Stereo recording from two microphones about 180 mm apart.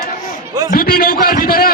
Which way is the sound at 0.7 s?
55° left (ahead or behind).